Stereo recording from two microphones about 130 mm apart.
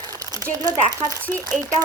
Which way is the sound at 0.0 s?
30° right (ahead or behind).